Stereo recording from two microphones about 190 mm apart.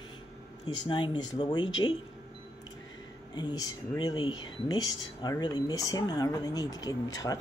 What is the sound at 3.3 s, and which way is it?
Speech, 20° left (ahead or behind).